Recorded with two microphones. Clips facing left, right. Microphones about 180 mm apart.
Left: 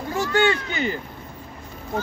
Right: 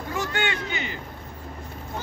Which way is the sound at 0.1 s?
35° left (ahead or behind).